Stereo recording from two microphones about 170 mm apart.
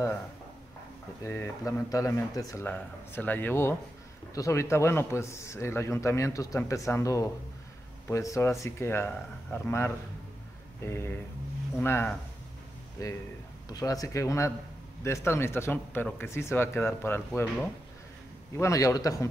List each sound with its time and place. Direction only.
1.2 s a man's voice: 15° left (ahead or behind)